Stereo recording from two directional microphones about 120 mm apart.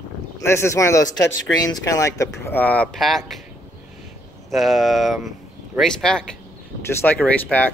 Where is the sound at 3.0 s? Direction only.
Centre (ahead or behind).